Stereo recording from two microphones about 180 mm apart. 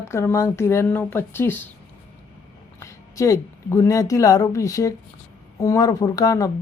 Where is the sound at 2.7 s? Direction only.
15° left (ahead or behind).